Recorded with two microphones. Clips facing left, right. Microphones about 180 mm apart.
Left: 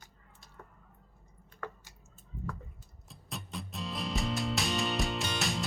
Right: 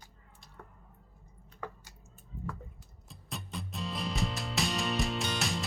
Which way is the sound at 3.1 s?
Centre (ahead or behind).